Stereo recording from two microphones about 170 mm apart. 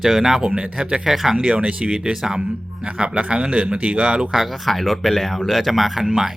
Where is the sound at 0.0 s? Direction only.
Centre (ahead or behind).